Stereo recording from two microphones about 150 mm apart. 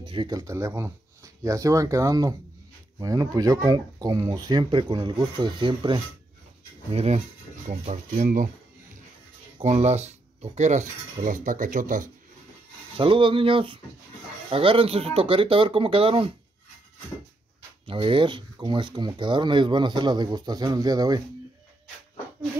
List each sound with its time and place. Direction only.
0.0 s speech: 30° right (ahead or behind)
6.9 s speech: 45° right (ahead or behind)
7.9 s speech: 60° right (ahead or behind)
9.6 s speech: 50° right (ahead or behind)
12.9 s speech: 35° right (ahead or behind)
17.8 s speech: 35° right (ahead or behind)